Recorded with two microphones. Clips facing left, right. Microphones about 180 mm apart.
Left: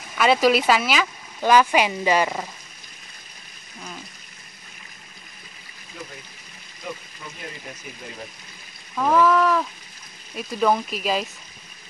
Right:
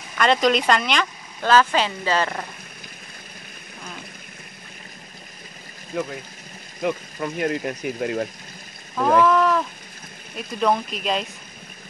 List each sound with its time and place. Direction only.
0.1 s speech: 5° left (ahead or behind)
5.9 s speech: 60° right (ahead or behind)
8.9 s speech: centre (ahead or behind)